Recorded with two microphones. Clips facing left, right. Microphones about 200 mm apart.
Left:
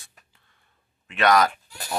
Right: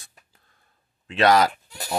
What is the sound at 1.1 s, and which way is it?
Speech, 30° right (ahead or behind).